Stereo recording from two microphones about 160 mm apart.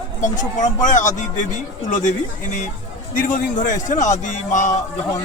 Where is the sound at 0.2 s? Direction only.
50° left (ahead or behind).